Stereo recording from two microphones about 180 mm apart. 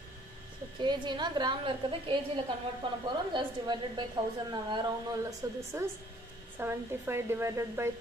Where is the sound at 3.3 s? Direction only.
25° right (ahead or behind).